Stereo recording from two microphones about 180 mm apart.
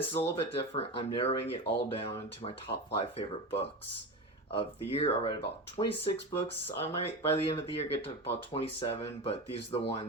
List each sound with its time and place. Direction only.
0.1 s speech: 35° left (ahead or behind)